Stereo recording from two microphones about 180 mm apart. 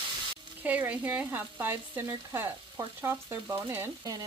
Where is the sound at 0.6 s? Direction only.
10° right (ahead or behind).